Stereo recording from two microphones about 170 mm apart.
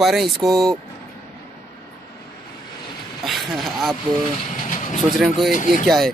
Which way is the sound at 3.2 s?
Centre (ahead or behind).